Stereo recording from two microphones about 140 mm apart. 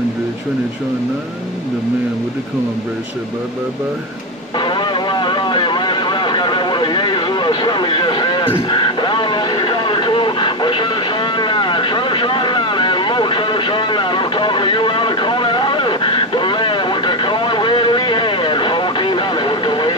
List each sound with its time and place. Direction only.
4.6 s vehicle: 35° left (ahead or behind)